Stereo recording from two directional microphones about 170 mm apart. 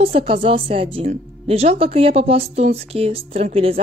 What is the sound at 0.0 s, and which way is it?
Speech, 35° right (ahead or behind).